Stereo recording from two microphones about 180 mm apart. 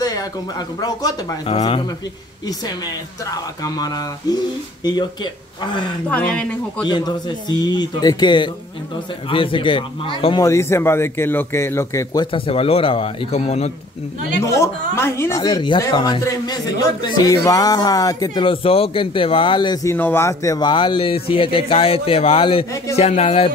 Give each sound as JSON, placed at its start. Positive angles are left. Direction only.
{"t": 0.0, "sound": "speech", "side_deg": 20}
{"t": 3.3, "sound": "speech", "side_deg": 20}
{"t": 6.0, "sound": "speech", "side_deg": 10}
{"t": 6.9, "sound": "speech", "side_deg": 25}
{"t": 14.4, "sound": "speech", "side_deg": 15}